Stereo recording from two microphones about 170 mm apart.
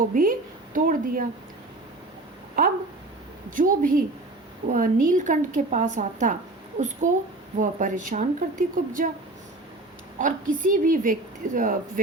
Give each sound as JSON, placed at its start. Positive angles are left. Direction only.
{"t": 0.1, "sound": "speech", "side_deg": -55}
{"t": 3.5, "sound": "a woman's voice", "side_deg": -55}
{"t": 10.2, "sound": "a woman's voice", "side_deg": -50}